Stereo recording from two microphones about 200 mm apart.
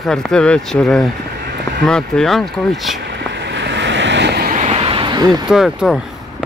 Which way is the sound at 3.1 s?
60° right (ahead or behind).